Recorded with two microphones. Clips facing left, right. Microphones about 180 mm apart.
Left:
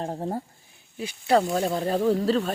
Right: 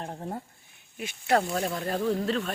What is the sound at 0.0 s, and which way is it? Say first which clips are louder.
Speech: left 6 dB; 35° left (ahead or behind).